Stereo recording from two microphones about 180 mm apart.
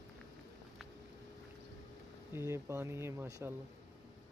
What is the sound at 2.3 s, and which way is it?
Speech, 15° right (ahead or behind).